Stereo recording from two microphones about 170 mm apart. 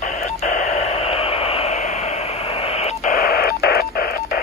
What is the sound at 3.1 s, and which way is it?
Radio, 60° left (ahead or behind).